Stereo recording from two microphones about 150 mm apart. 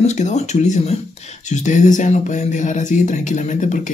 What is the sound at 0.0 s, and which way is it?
Speech, 50° left (ahead or behind).